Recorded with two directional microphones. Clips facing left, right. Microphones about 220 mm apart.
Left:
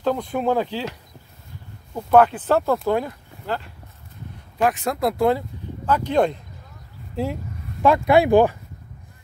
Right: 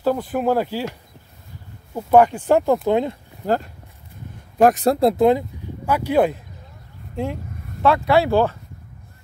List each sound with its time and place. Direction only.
0.0 s speech: 5° right (ahead or behind)
2.0 s speech: 15° right (ahead or behind)
3.4 s speech: 45° right (ahead or behind); by 5.4 s 20° right (ahead or behind)
5.9 s speech: 10° right (ahead or behind)
7.8 s speech: 15° left (ahead or behind)